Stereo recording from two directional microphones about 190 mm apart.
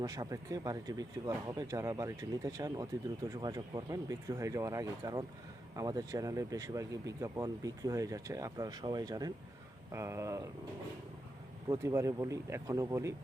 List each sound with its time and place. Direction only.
0.0 s speech: 20° right (ahead or behind)
11.7 s speech: 15° right (ahead or behind)